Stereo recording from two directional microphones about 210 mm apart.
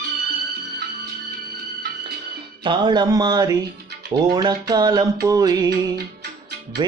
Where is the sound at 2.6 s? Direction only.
20° right (ahead or behind).